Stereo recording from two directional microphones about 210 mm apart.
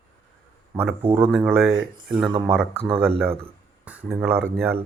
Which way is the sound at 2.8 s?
30° right (ahead or behind).